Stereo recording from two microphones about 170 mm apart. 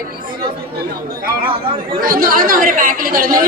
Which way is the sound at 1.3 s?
65° right (ahead or behind).